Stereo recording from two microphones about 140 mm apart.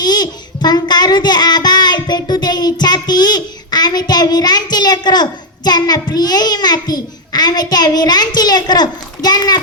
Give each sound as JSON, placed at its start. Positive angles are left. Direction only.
{"t": 0.0, "sound": "child singing", "side_deg": 30}